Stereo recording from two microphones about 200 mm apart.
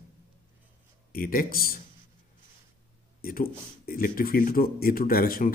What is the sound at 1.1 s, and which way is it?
Speech, 45° left (ahead or behind).